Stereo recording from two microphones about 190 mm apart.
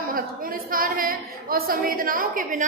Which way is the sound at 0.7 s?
50° right (ahead or behind).